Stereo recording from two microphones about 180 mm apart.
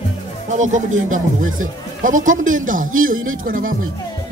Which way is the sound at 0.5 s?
40° right (ahead or behind).